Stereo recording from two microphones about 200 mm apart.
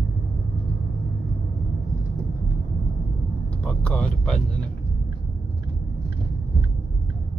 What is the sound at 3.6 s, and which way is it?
Vehicle, 5° left (ahead or behind).